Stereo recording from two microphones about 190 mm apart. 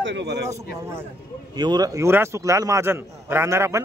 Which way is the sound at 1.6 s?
20° right (ahead or behind).